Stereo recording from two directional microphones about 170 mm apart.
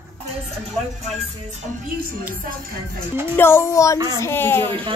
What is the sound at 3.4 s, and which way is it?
A woman's voice, 15° left (ahead or behind).